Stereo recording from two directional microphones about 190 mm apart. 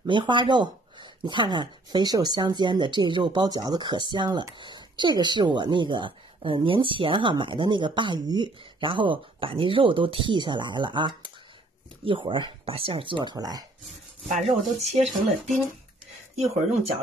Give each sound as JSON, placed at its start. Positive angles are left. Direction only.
{"t": 0.0, "sound": "speech", "side_deg": -25}
{"t": 14.8, "sound": "speech", "side_deg": -35}
{"t": 15.0, "sound": "speech", "side_deg": 0}